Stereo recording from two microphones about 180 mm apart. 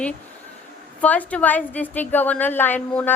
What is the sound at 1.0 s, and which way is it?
A woman's voice, 10° left (ahead or behind).